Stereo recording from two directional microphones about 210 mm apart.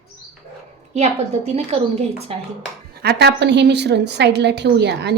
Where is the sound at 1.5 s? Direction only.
30° right (ahead or behind).